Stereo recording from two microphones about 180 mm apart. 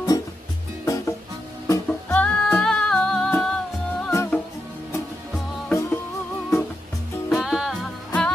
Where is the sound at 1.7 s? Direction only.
10° left (ahead or behind).